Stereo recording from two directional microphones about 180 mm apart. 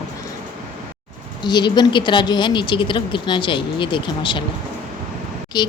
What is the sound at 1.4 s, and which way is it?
Speech, 25° left (ahead or behind).